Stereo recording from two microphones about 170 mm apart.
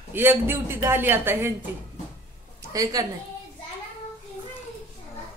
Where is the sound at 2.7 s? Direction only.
20° right (ahead or behind).